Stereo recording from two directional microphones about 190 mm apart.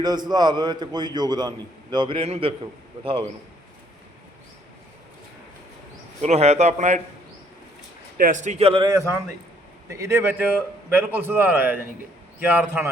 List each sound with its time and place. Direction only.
0.0 s a man's voice: 20° right (ahead or behind)
6.2 s a man's voice: 35° right (ahead or behind)
8.2 s a man's voice: 40° right (ahead or behind); by 9.0 s 25° right (ahead or behind)
9.9 s a man's voice: 15° right (ahead or behind)